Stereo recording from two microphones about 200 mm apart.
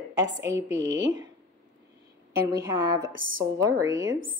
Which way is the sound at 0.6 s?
65° right (ahead or behind).